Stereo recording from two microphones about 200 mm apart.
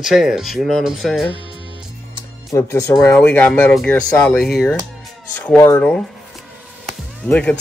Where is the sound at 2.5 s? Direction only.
15° left (ahead or behind).